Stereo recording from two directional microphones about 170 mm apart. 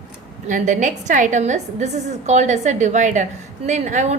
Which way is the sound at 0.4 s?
45° right (ahead or behind).